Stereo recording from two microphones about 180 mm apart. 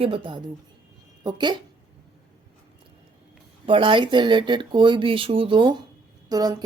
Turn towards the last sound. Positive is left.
turn(degrees=-20)  # may be behind; listen again after turning